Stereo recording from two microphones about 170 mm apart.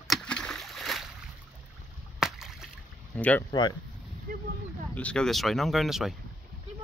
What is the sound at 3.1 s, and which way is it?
Speech, 10° left (ahead or behind).